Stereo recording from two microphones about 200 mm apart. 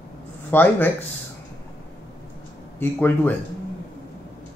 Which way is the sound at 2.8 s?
10° left (ahead or behind).